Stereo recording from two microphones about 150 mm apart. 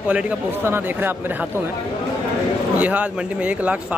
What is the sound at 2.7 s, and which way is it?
Speech, 10° right (ahead or behind).